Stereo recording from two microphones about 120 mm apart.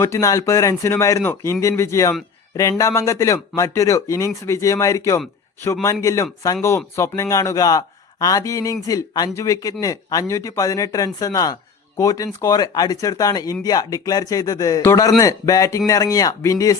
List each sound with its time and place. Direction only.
0.0 s speech: 25° left (ahead or behind)